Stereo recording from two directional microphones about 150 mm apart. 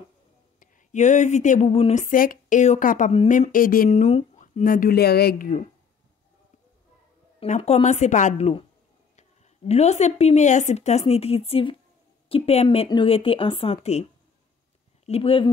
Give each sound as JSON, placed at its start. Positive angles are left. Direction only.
{"t": 0.6, "sound": "speech", "side_deg": 50}
{"t": 3.9, "sound": "speech", "side_deg": 50}
{"t": 7.3, "sound": "a woman's voice", "side_deg": 50}
{"t": 15.0, "sound": "a woman's voice", "side_deg": 40}